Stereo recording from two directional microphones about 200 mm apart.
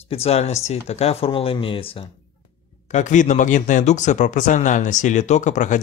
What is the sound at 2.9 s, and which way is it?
Speech, 35° left (ahead or behind).